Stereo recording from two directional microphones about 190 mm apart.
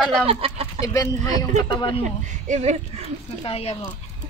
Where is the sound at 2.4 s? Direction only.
40° right (ahead or behind).